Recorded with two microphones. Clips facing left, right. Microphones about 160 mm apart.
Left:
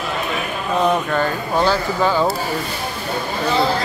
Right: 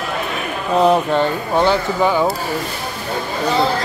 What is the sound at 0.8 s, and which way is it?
Speech, 30° right (ahead or behind).